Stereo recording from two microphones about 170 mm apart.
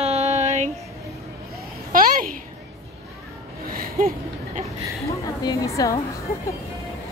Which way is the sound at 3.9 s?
55° right (ahead or behind).